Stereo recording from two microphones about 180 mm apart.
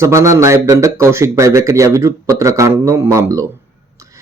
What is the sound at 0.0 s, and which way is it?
Speech, 15° right (ahead or behind).